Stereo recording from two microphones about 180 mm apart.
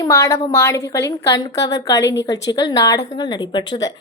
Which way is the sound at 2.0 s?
80° left.